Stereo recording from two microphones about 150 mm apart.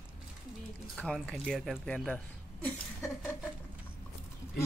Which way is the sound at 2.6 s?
15° left (ahead or behind).